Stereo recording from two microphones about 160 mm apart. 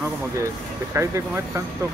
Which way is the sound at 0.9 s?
15° right (ahead or behind).